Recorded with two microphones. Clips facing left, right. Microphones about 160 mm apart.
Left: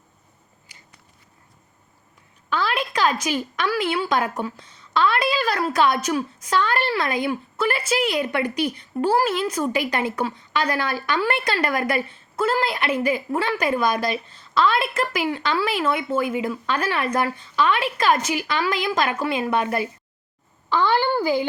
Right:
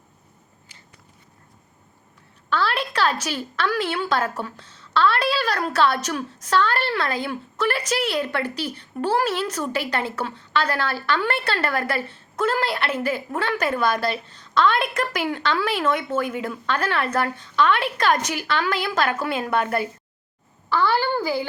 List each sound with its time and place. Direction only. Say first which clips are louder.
2.5 s a woman's voice: even; 10° left (ahead or behind)
20.7 s a woman's voice: left 1 dB; 15° left (ahead or behind)